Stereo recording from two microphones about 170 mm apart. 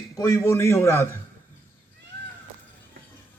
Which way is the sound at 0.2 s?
15° left (ahead or behind).